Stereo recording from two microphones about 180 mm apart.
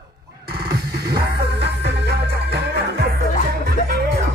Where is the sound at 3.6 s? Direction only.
60° right (ahead or behind).